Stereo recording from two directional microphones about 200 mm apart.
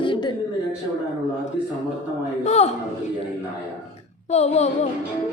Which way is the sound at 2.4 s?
30° left (ahead or behind).